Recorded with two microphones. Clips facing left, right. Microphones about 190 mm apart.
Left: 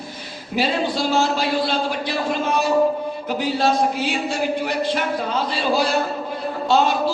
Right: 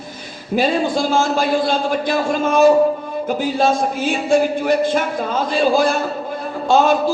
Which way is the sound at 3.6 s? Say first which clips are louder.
Right 2 dB; 50° right (ahead or behind).